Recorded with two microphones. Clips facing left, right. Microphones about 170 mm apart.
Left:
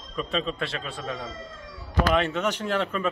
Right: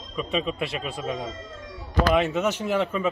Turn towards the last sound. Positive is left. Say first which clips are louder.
# right 2 dB
turn(degrees=-10)  # may be behind; listen again after turning